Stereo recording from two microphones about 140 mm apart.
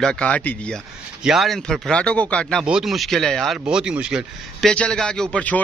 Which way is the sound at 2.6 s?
5° right (ahead or behind).